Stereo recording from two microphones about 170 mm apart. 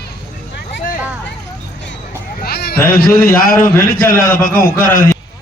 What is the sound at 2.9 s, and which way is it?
A man's voice, 60° left (ahead or behind).